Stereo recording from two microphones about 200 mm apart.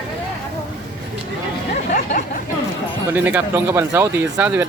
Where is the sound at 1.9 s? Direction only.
40° left (ahead or behind).